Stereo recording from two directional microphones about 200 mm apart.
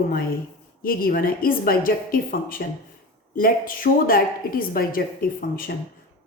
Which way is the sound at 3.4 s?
45° left (ahead or behind).